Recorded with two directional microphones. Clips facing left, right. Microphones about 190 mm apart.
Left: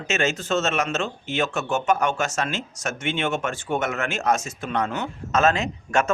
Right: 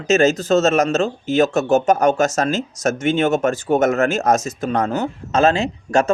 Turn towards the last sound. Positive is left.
turn(degrees=-35)  # may be behind; listen again after turning